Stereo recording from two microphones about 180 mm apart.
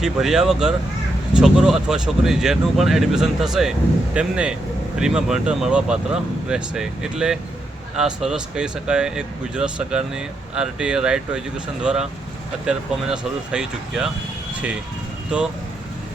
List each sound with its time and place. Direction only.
0.0 s speech: centre (ahead or behind)